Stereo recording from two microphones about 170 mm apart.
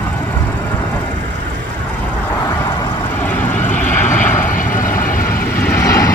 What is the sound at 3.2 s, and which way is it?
Vehicle, 10° left (ahead or behind).